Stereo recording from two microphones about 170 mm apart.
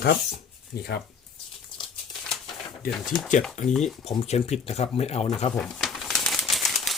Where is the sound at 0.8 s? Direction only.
70° left (ahead or behind).